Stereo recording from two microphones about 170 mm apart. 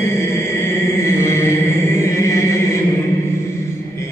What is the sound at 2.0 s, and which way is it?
Chant, 15° left (ahead or behind).